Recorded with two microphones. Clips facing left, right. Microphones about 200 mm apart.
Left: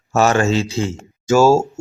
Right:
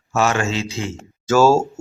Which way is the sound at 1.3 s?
15° left (ahead or behind).